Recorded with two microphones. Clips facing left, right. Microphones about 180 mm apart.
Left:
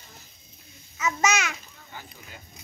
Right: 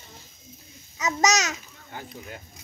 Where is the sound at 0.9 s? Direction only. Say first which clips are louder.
Right 2 dB; 40° right (ahead or behind).